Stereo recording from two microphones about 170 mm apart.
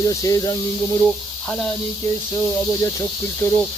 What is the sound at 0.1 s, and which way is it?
Speech, 20° left (ahead or behind).